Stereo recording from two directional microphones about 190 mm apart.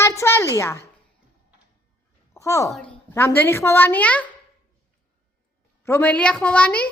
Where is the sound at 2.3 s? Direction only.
15° left (ahead or behind).